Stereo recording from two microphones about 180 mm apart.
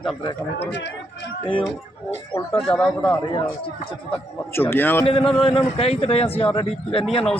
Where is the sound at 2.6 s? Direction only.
5° left (ahead or behind).